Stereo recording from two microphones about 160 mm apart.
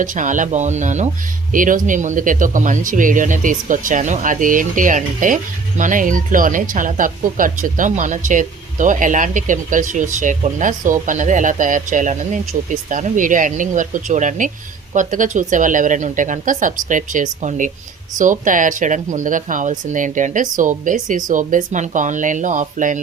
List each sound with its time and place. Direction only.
0.0 s speech: 55° right (ahead or behind)